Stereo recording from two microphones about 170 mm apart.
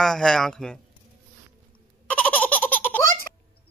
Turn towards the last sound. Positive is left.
turn(degrees=10)  # may be behind; listen again after turning